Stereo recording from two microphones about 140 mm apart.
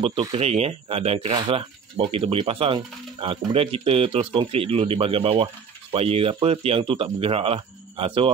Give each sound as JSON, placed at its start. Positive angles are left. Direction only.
{"t": 0.4, "sound": "speech", "side_deg": -45}